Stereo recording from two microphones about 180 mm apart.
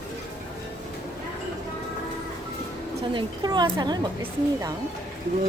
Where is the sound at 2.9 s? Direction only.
25° right (ahead or behind).